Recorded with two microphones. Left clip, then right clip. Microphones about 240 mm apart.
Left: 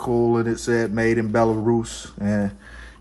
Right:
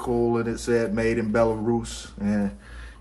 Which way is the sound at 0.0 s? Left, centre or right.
Left.